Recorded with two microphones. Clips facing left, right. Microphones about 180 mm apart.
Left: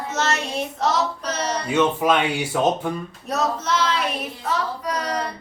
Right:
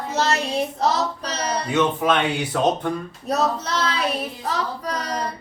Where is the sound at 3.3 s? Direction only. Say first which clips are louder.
Right 1 dB; 35° right (ahead or behind).